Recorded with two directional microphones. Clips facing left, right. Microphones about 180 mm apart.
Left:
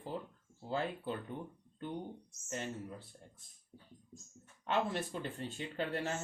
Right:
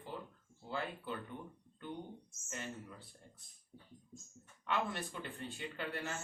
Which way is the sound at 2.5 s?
35° left (ahead or behind).